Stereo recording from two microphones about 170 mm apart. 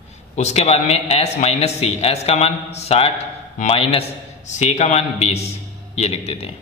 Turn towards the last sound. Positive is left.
turn(degrees=35)  # may be behind; listen again after turning